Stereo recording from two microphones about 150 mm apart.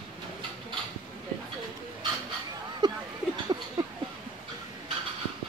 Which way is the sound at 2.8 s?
30° right (ahead or behind).